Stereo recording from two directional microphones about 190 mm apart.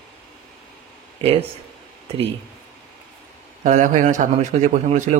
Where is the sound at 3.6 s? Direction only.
40° right (ahead or behind).